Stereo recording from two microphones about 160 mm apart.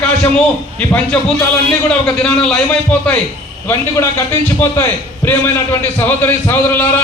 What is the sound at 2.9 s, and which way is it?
A man's voice, 10° left (ahead or behind).